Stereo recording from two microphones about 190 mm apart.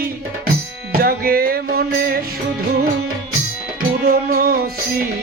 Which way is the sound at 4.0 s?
55° right (ahead or behind).